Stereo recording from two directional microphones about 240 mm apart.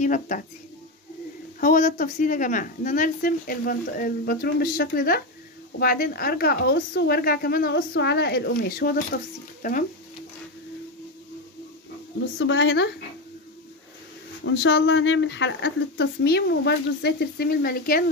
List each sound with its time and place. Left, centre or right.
0.0 s a woman's voice: left
1.6 s a woman's voice: left
12.4 s speech: left
14.4 s speech: left